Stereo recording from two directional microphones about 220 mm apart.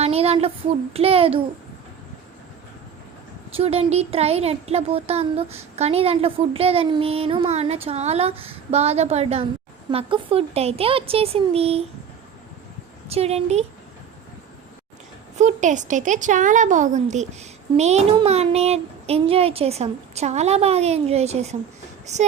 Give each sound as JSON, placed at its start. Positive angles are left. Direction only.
{"t": 0.0, "sound": "a sound", "side_deg": -25}
{"t": 0.9, "sound": "a woman's voice", "side_deg": -25}
{"t": 3.5, "sound": "a woman's voice", "side_deg": -25}
{"t": 13.1, "sound": "a woman's voice", "side_deg": -30}
{"t": 15.4, "sound": "a woman's voice", "side_deg": -35}